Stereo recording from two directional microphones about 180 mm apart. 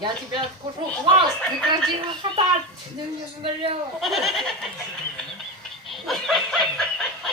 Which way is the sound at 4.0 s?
Centre (ahead or behind).